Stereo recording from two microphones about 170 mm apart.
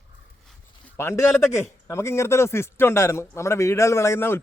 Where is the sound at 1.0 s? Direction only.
15° left (ahead or behind).